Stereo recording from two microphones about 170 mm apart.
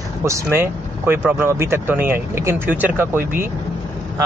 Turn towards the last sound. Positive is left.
turn(degrees=-10)  # may be behind; listen again after turning